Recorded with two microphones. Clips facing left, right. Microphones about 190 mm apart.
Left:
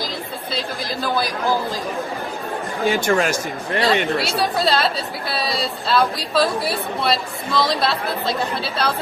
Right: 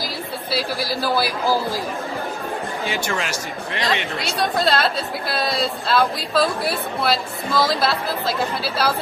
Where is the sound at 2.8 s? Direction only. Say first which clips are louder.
Left 10 dB; 50° left (ahead or behind).